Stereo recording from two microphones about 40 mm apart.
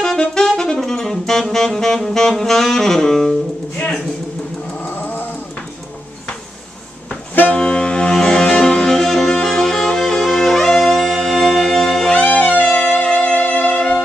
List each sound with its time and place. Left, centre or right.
0.3 s saxophone: centre
4.8 s roaring cats: left
7.5 s saxophone: left
8.1 s music: centre
12.1 s wind instrument: left; by 14.0 s centre